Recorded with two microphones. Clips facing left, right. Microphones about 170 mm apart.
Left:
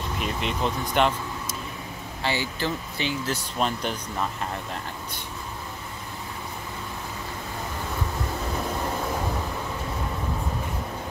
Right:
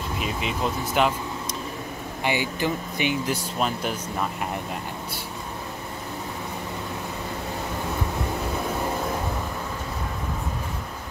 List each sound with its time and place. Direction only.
0.2 s speech: 5° right (ahead or behind)
2.2 s speech: 15° right (ahead or behind)
3.5 s speech: 5° right (ahead or behind)